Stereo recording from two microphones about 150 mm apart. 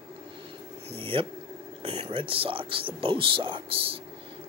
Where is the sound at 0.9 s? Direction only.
35° right (ahead or behind).